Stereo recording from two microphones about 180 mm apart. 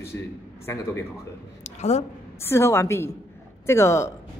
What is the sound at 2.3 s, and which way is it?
A woman's voice, 15° left (ahead or behind).